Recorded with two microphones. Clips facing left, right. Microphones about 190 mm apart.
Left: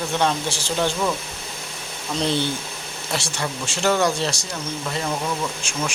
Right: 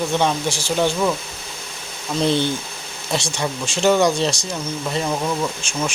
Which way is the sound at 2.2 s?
15° right (ahead or behind).